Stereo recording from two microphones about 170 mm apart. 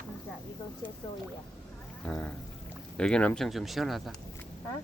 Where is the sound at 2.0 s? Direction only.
5° left (ahead or behind).